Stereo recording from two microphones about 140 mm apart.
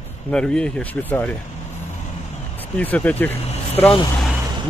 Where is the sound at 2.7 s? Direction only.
10° left (ahead or behind).